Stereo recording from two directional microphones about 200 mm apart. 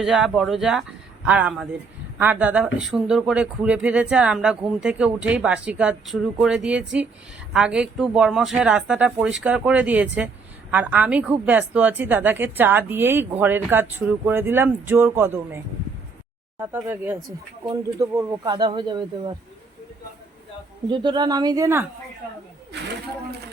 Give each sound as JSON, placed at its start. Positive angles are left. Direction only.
{"t": 0.0, "sound": "a woman's voice", "side_deg": -5}
{"t": 20.9, "sound": "speech", "side_deg": -25}